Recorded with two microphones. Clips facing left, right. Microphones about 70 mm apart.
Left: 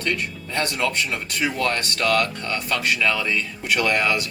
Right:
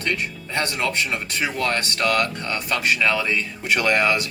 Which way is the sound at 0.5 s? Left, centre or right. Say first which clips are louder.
Even; right.